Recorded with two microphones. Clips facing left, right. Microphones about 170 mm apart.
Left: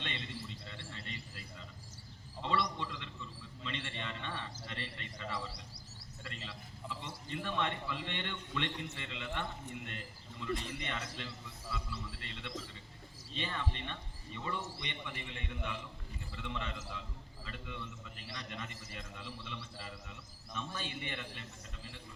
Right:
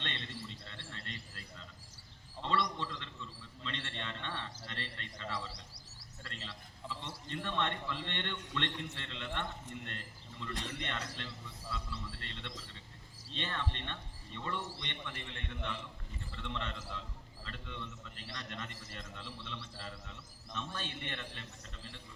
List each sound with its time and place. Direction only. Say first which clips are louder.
0.0 s a sound: even; 10° left (ahead or behind)
6.2 s a man's voice: left 1 dB; 5° left (ahead or behind)
10.5 s a man's voice: left 4 dB; 70° right (ahead or behind)
10.8 s a man's voice: even; 10° left (ahead or behind)